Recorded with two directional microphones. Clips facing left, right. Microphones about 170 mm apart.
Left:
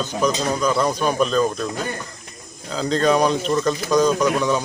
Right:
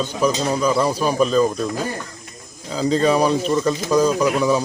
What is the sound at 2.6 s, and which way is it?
Speech, 5° right (ahead or behind).